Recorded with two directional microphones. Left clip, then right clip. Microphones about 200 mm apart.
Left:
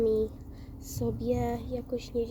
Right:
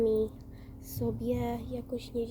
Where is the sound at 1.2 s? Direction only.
15° right (ahead or behind).